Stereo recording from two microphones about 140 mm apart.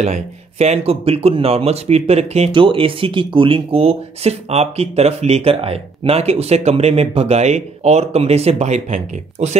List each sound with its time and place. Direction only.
0.0 s speech: 50° right (ahead or behind)
2.5 s speech: 35° right (ahead or behind); by 9.6 s 55° right (ahead or behind)